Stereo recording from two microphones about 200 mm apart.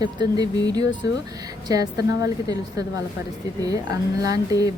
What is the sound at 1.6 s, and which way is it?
Speech, 20° right (ahead or behind).